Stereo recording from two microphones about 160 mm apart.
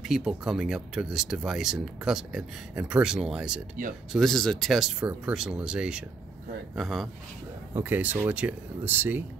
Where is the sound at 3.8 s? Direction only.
55° right (ahead or behind).